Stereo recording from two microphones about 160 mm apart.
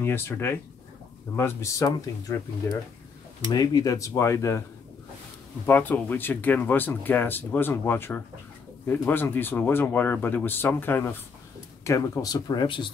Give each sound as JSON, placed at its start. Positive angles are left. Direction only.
{"t": 0.0, "sound": "speech", "side_deg": 15}
{"t": 3.5, "sound": "speech", "side_deg": 25}
{"t": 5.7, "sound": "speech", "side_deg": 10}